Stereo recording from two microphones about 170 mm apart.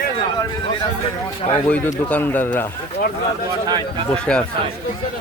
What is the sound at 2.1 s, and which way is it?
Speech, 10° left (ahead or behind).